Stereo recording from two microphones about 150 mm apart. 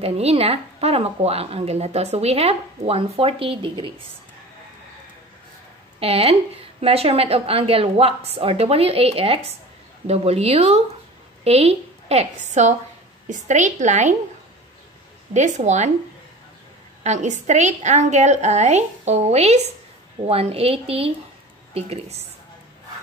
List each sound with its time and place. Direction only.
0.0 s a woman's voice: 40° right (ahead or behind)
5.9 s a woman's voice: 40° right (ahead or behind)
15.3 s a woman's voice: 50° right (ahead or behind)
17.0 s a woman's voice: 50° right (ahead or behind)